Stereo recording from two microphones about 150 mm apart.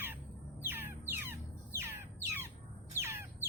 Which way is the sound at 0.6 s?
15° right (ahead or behind).